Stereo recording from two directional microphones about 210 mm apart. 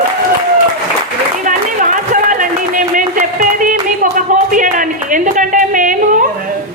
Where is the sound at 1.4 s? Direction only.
40° right (ahead or behind).